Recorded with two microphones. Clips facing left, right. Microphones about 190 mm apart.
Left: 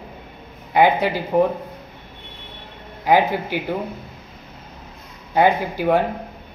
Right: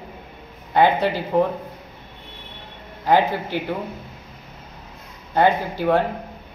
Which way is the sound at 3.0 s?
10° left (ahead or behind).